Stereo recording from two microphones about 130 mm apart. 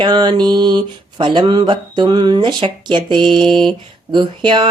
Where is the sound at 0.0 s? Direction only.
35° right (ahead or behind).